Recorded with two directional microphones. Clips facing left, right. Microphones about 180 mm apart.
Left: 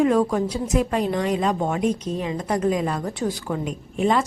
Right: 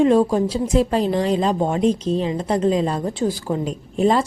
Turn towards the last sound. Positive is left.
turn(degrees=-35)  # may be behind; listen again after turning